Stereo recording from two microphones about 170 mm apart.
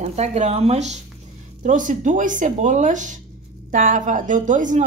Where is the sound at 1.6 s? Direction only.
50° right (ahead or behind).